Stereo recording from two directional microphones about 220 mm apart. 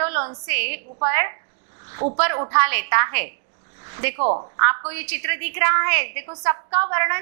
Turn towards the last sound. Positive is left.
turn(degrees=-15)  # may be behind; listen again after turning